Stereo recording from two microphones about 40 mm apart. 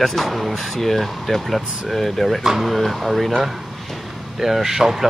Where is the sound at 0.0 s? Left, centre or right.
Centre.